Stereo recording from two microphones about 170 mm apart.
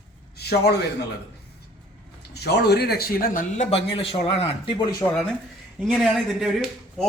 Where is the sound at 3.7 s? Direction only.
35° left (ahead or behind).